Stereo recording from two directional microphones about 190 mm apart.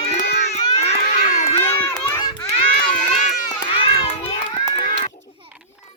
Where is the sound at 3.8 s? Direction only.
30° left (ahead or behind).